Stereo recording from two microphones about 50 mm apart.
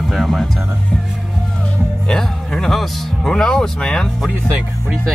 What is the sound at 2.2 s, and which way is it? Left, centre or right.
Speech, centre.